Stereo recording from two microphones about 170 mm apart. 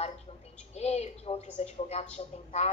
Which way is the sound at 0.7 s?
40° left (ahead or behind).